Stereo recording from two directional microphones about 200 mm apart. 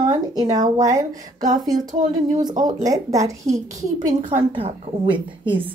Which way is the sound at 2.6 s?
20° right (ahead or behind).